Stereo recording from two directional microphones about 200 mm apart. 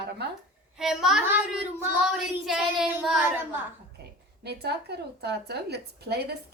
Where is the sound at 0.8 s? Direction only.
Centre (ahead or behind).